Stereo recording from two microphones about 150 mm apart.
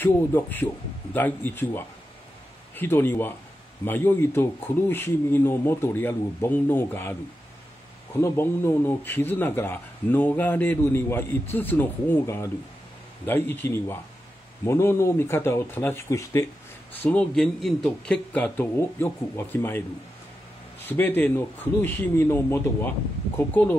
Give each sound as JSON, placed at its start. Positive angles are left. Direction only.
{"t": 0.0, "sound": "speech", "side_deg": 15}
{"t": 8.2, "sound": "speech", "side_deg": 15}
{"t": 20.8, "sound": "speech", "side_deg": 15}